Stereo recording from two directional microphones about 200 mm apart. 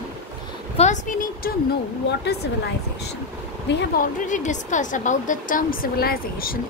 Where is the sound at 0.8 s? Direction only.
40° left (ahead or behind).